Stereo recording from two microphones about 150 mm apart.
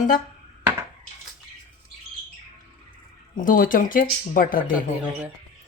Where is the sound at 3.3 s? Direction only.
65° left (ahead or behind).